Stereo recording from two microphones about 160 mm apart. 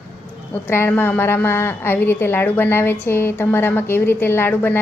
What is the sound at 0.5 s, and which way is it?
A woman's voice, 15° left (ahead or behind).